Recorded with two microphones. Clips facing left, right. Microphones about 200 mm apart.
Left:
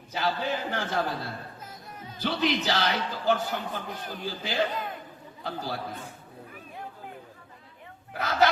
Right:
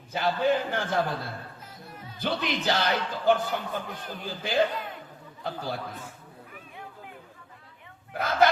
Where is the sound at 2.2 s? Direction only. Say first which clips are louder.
Left 2 dB; 55° right (ahead or behind).